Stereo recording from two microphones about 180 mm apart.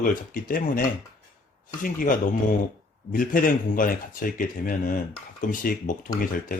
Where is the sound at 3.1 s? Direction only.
50° left (ahead or behind).